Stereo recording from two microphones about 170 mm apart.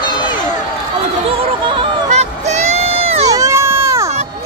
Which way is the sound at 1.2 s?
35° right (ahead or behind).